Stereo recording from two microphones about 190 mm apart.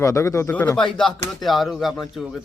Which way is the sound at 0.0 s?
15° left (ahead or behind).